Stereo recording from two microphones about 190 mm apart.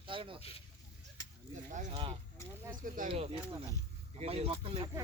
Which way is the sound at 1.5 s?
40° right (ahead or behind).